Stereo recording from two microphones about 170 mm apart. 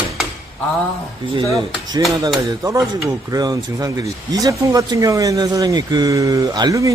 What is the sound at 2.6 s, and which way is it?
Speech, 15° right (ahead or behind).